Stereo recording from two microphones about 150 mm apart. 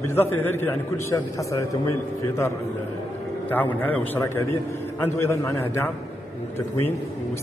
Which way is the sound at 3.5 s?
10° left (ahead or behind).